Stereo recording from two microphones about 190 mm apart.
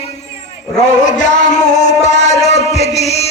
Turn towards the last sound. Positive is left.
turn(degrees=35)  # may be behind; listen again after turning